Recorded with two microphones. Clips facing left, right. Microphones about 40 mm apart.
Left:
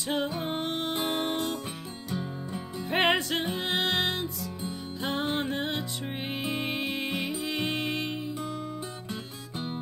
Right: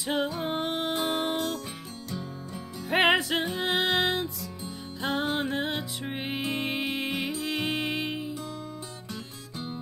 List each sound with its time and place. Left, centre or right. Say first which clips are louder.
0.0 s music: right 1 dB; centre
2.0 s music: left 3 dB; left
2.9 s music: right 2 dB; centre